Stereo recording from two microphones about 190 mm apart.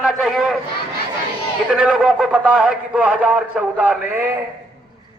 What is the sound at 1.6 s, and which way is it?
A man's voice, 5° right (ahead or behind).